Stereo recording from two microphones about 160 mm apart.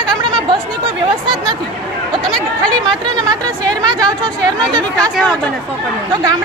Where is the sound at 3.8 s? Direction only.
25° right (ahead or behind).